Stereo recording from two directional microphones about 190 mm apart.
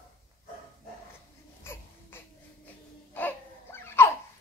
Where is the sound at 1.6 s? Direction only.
10° left (ahead or behind).